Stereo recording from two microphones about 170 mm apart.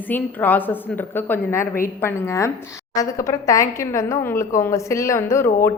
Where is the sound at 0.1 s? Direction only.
10° left (ahead or behind).